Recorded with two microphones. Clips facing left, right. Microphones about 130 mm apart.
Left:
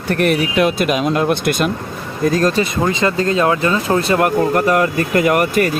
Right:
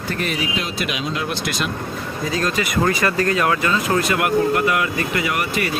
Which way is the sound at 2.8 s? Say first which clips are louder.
Left 1 dB; 25° left (ahead or behind).